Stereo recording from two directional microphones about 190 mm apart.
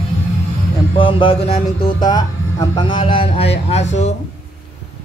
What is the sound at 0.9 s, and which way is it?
A man's voice, 25° left (ahead or behind).